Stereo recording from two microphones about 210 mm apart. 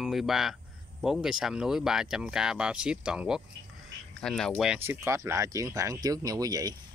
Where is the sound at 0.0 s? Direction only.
Centre (ahead or behind).